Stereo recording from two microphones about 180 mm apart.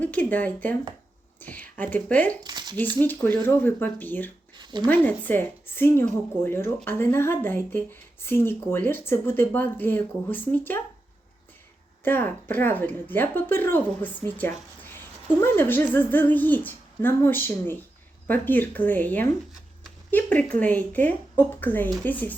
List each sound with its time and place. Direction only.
0.0 s speech: 10° left (ahead or behind)
2.4 s a sound: 25° right (ahead or behind)
3.0 s speech: 10° left (ahead or behind)
4.5 s a sound: 25° right (ahead or behind)
4.9 s speech: 10° left (ahead or behind)
12.0 s speech: 10° left (ahead or behind)